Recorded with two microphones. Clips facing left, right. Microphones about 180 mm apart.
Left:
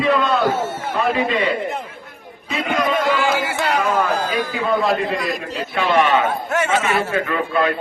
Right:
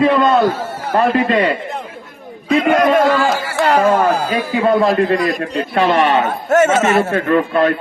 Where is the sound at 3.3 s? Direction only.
20° left (ahead or behind).